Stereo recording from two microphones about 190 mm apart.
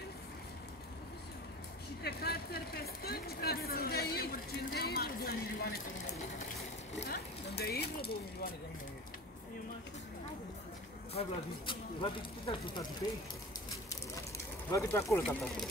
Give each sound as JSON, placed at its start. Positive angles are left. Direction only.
{"t": 2.0, "sound": "a sound", "side_deg": 55}
{"t": 7.0, "sound": "speech", "side_deg": 60}
{"t": 11.1, "sound": "speech", "side_deg": 25}
{"t": 14.7, "sound": "speech", "side_deg": 15}
{"t": 15.2, "sound": "speech", "side_deg": 0}